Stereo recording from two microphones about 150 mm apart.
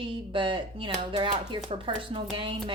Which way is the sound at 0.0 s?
35° right (ahead or behind).